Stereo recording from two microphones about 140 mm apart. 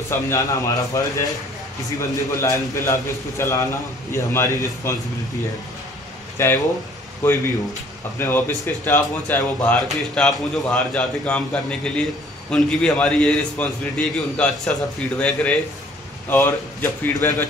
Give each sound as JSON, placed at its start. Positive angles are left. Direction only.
{"t": 0.1, "sound": "a man's voice", "side_deg": 25}
{"t": 6.3, "sound": "a man's voice", "side_deg": 15}